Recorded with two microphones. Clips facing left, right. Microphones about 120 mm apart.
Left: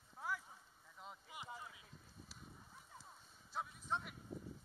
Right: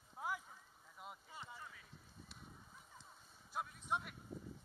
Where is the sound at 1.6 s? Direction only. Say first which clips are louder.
Even; 15° left (ahead or behind).